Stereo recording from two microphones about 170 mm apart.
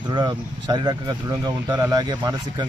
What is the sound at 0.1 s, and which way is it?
Speech, 25° right (ahead or behind).